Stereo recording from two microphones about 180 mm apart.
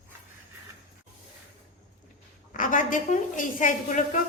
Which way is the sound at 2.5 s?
45° left (ahead or behind).